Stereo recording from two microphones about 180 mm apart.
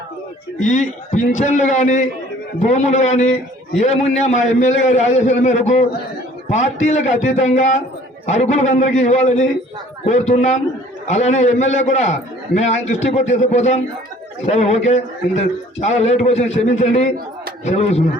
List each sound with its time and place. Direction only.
0.7 s a man's voice: 40° left (ahead or behind)